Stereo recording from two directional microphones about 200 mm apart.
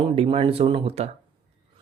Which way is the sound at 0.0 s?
25° right (ahead or behind).